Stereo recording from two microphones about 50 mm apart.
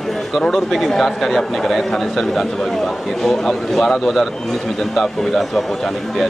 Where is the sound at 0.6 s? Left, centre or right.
Centre.